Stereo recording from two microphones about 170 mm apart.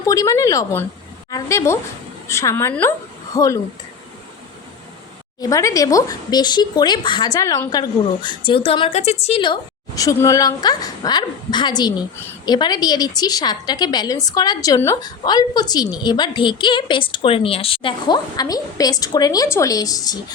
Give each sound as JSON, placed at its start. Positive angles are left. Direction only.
{"t": 0.0, "sound": "a woman's voice", "side_deg": 20}
{"t": 5.4, "sound": "a woman's voice", "side_deg": 20}